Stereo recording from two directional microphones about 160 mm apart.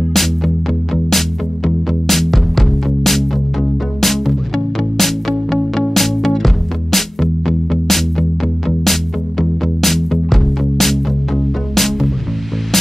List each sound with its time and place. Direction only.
0.1 s music: centre (ahead or behind)